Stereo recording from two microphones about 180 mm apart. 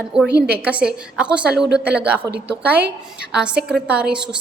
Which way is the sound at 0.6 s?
5° right (ahead or behind).